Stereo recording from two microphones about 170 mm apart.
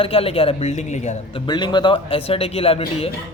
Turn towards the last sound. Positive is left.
turn(degrees=35)  # may be behind; listen again after turning